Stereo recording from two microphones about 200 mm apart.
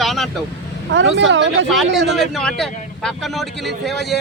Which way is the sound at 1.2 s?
65° right (ahead or behind).